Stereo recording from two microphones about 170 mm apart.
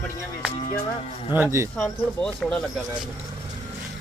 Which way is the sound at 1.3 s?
15° right (ahead or behind).